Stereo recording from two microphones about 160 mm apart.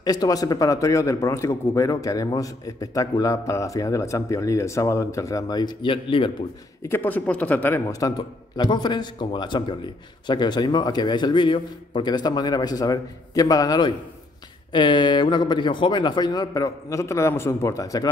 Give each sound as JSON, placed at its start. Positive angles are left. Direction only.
{"t": 0.0, "sound": "a man's voice", "side_deg": 25}
{"t": 6.8, "sound": "a man's voice", "side_deg": 15}